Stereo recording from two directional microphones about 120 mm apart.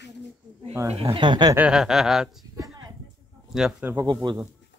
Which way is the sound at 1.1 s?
40° right (ahead or behind).